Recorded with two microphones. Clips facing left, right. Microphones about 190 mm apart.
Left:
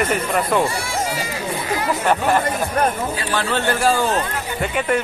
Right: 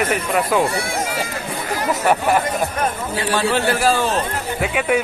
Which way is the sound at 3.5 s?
10° right (ahead or behind).